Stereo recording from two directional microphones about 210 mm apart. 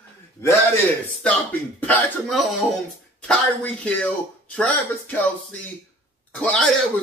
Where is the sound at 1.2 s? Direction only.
10° left (ahead or behind).